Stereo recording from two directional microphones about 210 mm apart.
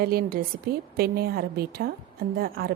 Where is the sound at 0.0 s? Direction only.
45° right (ahead or behind).